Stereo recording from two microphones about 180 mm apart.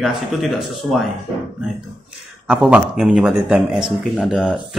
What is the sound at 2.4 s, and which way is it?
Speech, 5° right (ahead or behind).